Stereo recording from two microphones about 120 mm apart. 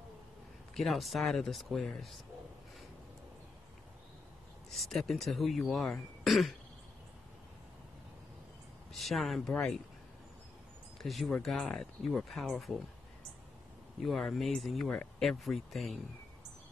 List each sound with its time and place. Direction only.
0.7 s speech: centre (ahead or behind)
4.6 s speech: centre (ahead or behind)
8.9 s speech: centre (ahead or behind)
11.0 s speech: centre (ahead or behind)
14.0 s speech: centre (ahead or behind)